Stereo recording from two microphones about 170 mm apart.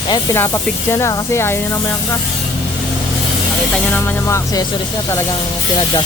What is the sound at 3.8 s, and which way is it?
Speech, 10° left (ahead or behind).